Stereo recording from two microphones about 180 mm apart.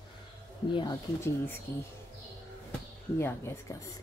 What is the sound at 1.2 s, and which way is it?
Speech, 10° left (ahead or behind).